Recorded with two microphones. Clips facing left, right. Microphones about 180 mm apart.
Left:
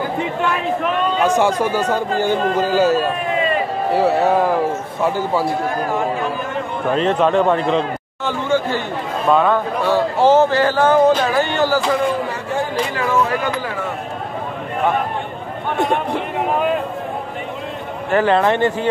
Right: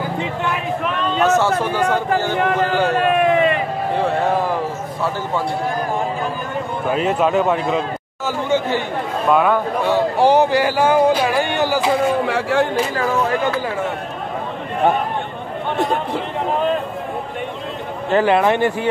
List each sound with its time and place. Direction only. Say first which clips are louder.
1.2 s a man's voice: right 1 dB; 15° left (ahead or behind)
2.9 s speech: right 2 dB; 75° right (ahead or behind)
3.9 s a man's voice: left 4 dB; 5° left (ahead or behind)
6.9 s speech: left 2 dB; 10° right (ahead or behind)
8.5 s speech: even; 15° right (ahead or behind)
12.3 s speech: right 5 dB; 80° right
18.1 s speech: even; 15° right (ahead or behind)